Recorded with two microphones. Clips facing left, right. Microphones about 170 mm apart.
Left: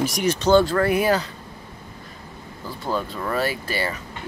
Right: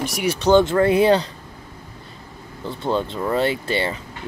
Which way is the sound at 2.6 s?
25° right (ahead or behind).